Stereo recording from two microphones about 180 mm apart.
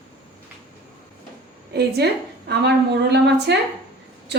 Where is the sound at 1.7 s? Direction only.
65° right (ahead or behind).